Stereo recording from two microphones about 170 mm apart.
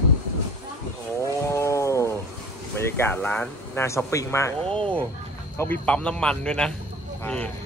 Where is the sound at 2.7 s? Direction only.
15° left (ahead or behind).